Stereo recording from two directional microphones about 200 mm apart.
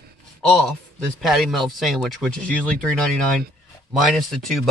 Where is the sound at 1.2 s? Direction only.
Centre (ahead or behind).